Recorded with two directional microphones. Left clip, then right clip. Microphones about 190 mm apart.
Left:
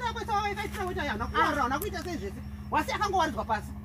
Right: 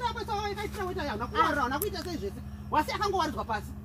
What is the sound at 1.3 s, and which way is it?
Speech, centre (ahead or behind).